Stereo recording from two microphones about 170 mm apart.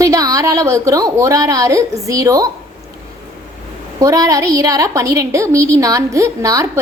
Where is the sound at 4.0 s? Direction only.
20° right (ahead or behind).